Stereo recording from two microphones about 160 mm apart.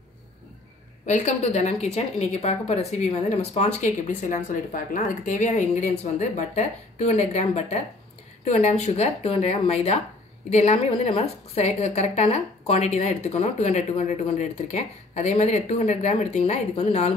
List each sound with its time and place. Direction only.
1.0 s a woman's voice: 45° left (ahead or behind)